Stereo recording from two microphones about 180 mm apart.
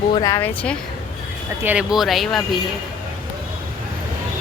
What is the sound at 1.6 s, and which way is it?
Speech, 5° right (ahead or behind).